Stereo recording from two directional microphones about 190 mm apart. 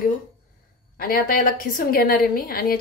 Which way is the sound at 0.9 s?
50° left (ahead or behind).